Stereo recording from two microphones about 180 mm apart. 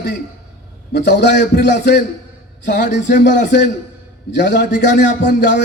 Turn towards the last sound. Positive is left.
turn(degrees=70)  # may be behind; listen again after turning